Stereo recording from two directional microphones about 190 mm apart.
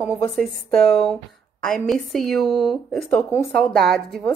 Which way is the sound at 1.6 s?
Centre (ahead or behind).